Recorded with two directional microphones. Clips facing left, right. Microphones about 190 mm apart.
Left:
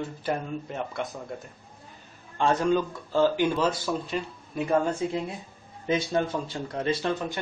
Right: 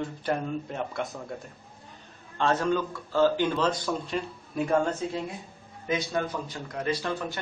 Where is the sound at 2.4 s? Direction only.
15° left (ahead or behind).